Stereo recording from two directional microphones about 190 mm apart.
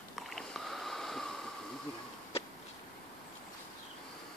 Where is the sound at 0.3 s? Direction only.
Centre (ahead or behind).